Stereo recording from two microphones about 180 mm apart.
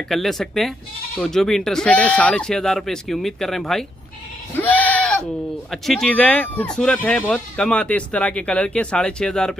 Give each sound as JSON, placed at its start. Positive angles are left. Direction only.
{"t": 0.1, "sound": "speech", "side_deg": 0}
{"t": 4.6, "sound": "bleat", "side_deg": 10}
{"t": 5.7, "sound": "speech", "side_deg": 0}